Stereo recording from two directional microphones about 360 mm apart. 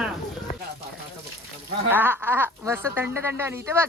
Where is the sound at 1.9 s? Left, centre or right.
Centre.